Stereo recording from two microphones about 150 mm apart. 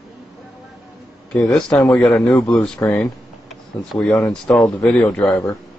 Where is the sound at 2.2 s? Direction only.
15° left (ahead or behind).